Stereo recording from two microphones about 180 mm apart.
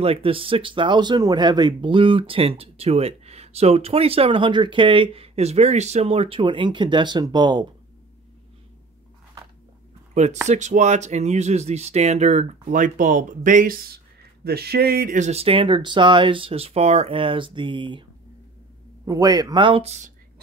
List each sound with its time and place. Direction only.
0.0 s speech: 30° right (ahead or behind)
10.1 s speech: 40° right (ahead or behind)
19.0 s speech: 20° right (ahead or behind); by 20.1 s 35° right (ahead or behind)